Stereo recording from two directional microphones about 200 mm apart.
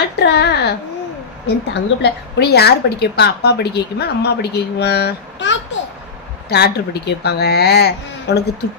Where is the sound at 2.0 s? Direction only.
55° left (ahead or behind).